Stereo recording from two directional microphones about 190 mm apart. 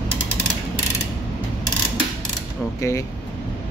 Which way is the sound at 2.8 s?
15° left (ahead or behind).